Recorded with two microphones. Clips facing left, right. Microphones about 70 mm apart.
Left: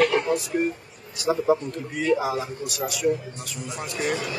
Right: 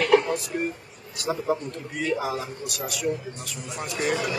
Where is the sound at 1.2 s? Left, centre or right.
Centre.